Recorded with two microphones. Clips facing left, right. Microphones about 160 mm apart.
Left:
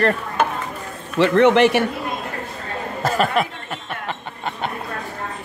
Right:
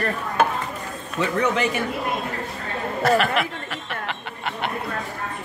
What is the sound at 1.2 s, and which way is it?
Speech, 75° left (ahead or behind).